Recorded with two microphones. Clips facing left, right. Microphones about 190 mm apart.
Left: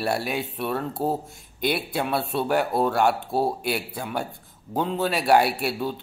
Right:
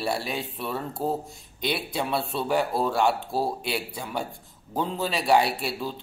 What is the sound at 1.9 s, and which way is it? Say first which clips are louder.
Speech: left 2 dB; centre (ahead or behind).